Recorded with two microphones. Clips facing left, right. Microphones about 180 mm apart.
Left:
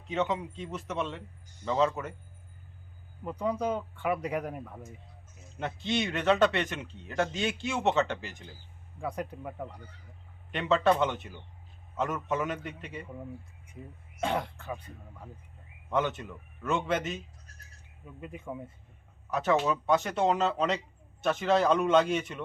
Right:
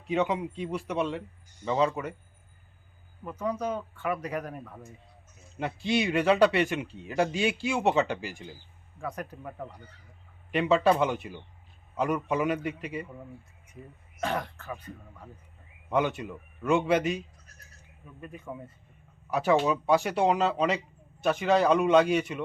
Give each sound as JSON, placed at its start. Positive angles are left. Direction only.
{"t": 0.1, "sound": "a man's voice", "side_deg": -10}
{"t": 3.2, "sound": "speech", "side_deg": 15}
{"t": 5.5, "sound": "a man's voice", "side_deg": -5}
{"t": 9.0, "sound": "speech", "side_deg": 15}
{"t": 10.5, "sound": "a man's voice", "side_deg": -10}
{"t": 14.2, "sound": "speech", "side_deg": 20}
{"t": 15.9, "sound": "a man's voice", "side_deg": -10}
{"t": 18.0, "sound": "speech", "side_deg": 20}
{"t": 19.6, "sound": "a man's voice", "side_deg": -15}